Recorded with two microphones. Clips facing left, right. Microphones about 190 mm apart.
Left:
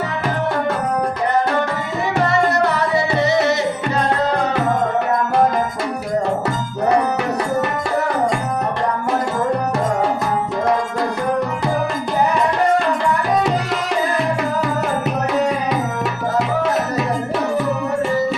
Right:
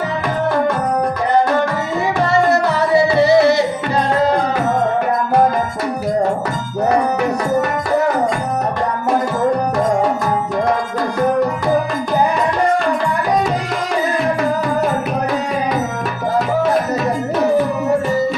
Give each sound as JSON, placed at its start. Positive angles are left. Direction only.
{"t": 2.3, "sound": "music", "side_deg": -30}